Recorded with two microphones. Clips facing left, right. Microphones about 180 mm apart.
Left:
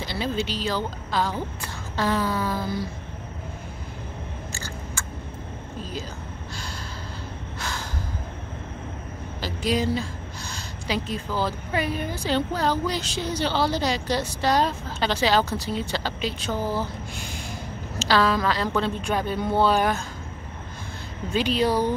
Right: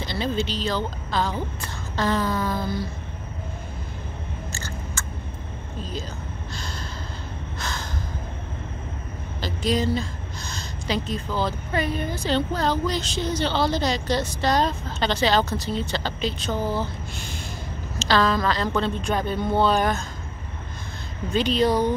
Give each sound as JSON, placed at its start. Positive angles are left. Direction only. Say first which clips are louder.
{"t": 0.0, "sound": "a woman's voice", "louder": "right 1 dB", "side_deg": 10}
{"t": 4.5, "sound": "scissors", "louder": "right 1 dB", "side_deg": 10}
{"t": 7.5, "sound": "gasp", "louder": "right 1 dB", "side_deg": 10}
{"t": 9.4, "sound": "a woman's voice", "louder": "right 1 dB", "side_deg": 10}
{"t": 21.3, "sound": "a woman's voice", "louder": "right 2 dB", "side_deg": 10}